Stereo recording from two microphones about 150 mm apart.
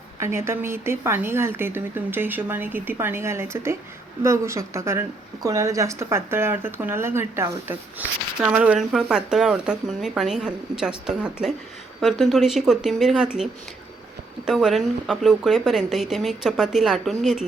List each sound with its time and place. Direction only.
0.2 s speech: 15° right (ahead or behind); by 17.4 s centre (ahead or behind)